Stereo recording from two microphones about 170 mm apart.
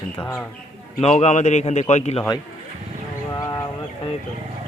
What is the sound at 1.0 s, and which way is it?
A man's voice, 40° left (ahead or behind).